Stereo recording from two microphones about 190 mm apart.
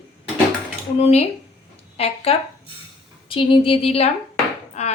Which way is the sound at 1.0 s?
35° left (ahead or behind).